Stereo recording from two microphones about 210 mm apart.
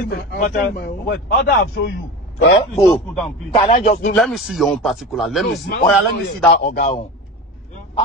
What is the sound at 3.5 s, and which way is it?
Speech, 30° left (ahead or behind).